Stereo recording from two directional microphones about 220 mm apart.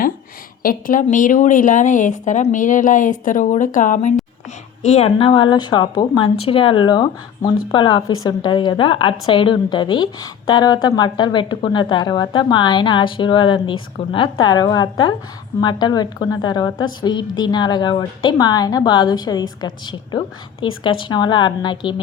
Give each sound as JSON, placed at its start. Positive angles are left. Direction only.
{"t": 0.6, "sound": "a woman's voice", "side_deg": 40}